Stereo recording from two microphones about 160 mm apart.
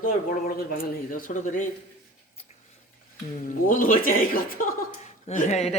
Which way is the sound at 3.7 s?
60° left (ahead or behind).